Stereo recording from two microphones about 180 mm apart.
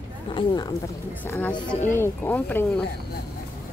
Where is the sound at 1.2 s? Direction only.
10° left (ahead or behind).